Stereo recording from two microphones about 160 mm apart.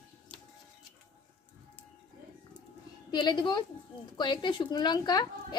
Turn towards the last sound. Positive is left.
turn(degrees=25)  # may be behind; listen again after turning